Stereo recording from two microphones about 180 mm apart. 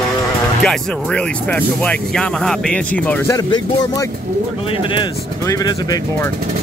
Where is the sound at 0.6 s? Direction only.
5° left (ahead or behind).